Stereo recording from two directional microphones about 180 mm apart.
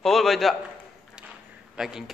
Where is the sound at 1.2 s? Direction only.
5° right (ahead or behind).